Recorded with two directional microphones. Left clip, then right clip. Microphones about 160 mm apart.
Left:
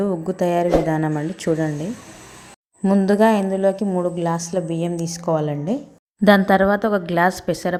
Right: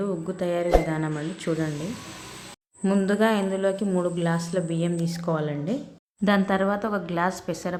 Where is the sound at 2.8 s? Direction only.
25° left (ahead or behind).